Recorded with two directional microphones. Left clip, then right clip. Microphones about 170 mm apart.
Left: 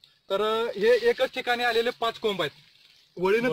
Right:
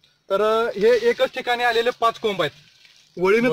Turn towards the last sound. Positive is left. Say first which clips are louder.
# right 6 dB
turn(degrees=-5)  # may be behind; listen again after turning